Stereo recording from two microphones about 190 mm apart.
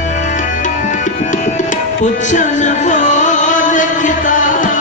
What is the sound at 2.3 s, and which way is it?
Music, 40° left (ahead or behind).